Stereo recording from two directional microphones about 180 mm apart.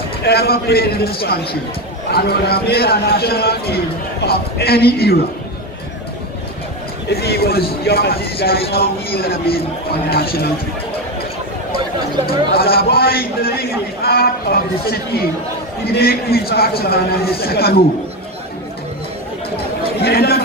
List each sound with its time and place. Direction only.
0.2 s a man's voice: 60° left (ahead or behind)
7.2 s a man's voice: 60° left (ahead or behind)
12.3 s a man's voice: 60° left (ahead or behind)
20.0 s a man's voice: 60° left (ahead or behind)